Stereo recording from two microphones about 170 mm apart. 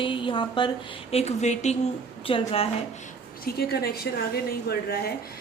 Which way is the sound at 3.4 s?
65° left (ahead or behind).